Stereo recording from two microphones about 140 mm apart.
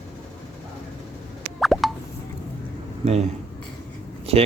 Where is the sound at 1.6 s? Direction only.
Centre (ahead or behind).